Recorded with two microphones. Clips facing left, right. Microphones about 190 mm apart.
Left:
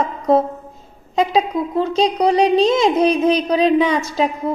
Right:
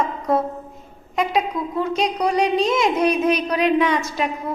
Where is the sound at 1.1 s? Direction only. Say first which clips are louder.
Left 4 dB; 30° left (ahead or behind).